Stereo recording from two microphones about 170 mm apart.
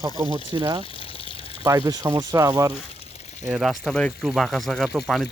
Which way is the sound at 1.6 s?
20° right (ahead or behind).